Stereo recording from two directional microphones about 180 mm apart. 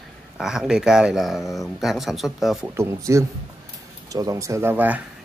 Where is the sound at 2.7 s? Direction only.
15° right (ahead or behind).